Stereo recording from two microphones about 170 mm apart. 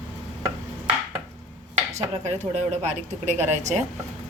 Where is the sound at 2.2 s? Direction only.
40° right (ahead or behind).